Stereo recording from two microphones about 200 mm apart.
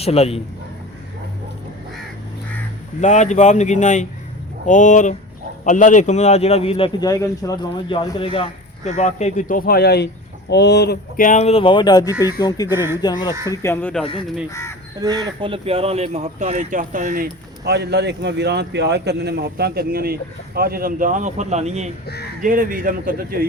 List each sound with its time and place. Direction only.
0.0 s speech: 30° left (ahead or behind)
3.0 s a man's voice: 35° left (ahead or behind)
8.8 s speech: 35° left (ahead or behind); by 11.3 s 55° left (ahead or behind)
11.3 s a man's voice: 35° left (ahead or behind)
12.6 s speech: 10° right (ahead or behind)
13.0 s a man's voice: 20° left (ahead or behind)
14.0 s a man's voice: 25° left (ahead or behind)
15.0 s speech: 20° right (ahead or behind); by 17.2 s 40° right (ahead or behind)
17.6 s a man's voice: 55° right (ahead or behind); by 21.8 s 35° right (ahead or behind)
22.0 s speech: 55° left (ahead or behind)
22.4 s a man's voice: 40° right (ahead or behind)